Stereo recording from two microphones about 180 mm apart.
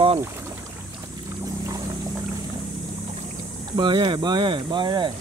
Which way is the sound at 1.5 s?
20° right (ahead or behind).